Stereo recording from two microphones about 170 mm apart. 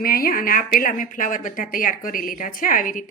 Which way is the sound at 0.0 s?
60° left (ahead or behind).